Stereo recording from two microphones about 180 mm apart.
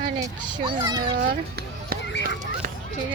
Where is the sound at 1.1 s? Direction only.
60° right (ahead or behind).